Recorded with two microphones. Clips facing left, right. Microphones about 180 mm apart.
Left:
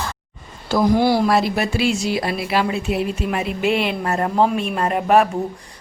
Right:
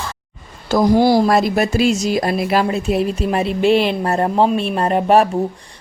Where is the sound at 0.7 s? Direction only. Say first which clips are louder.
Right 3 dB; 40° right (ahead or behind).